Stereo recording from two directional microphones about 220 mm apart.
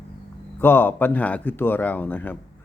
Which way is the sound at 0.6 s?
10° left (ahead or behind).